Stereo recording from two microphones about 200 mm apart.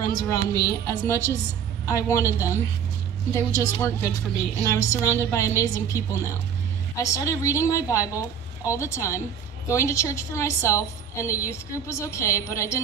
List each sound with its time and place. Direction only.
0.0 s a woman's voice: 15° left (ahead or behind)